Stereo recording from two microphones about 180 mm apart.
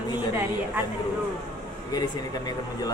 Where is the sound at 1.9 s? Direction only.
20° left (ahead or behind).